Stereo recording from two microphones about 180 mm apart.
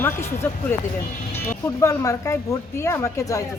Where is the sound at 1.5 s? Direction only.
20° left (ahead or behind).